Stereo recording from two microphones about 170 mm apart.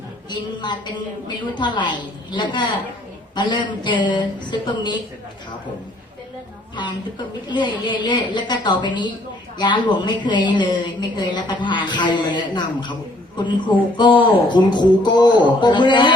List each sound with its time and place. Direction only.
0.3 s a man's voice: 25° left (ahead or behind)
7.5 s a man's voice: 25° left (ahead or behind)